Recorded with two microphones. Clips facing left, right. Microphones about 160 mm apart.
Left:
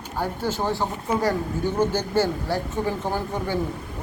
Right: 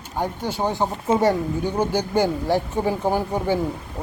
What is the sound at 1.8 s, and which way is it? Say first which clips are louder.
Speech: right 1 dB; 15° right (ahead or behind).